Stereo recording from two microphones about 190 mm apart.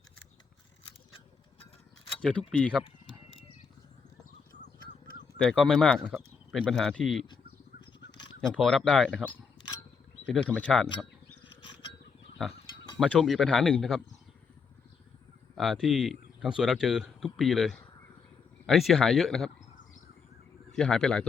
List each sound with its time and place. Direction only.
2.5 s speech: 5° left (ahead or behind)
5.4 s speech: 5° left (ahead or behind)
8.4 s speech: 5° left (ahead or behind)
10.2 s speech: 5° left (ahead or behind)
13.0 s speech: centre (ahead or behind)
15.5 s speech: centre (ahead or behind)
20.7 s speech: 5° left (ahead or behind)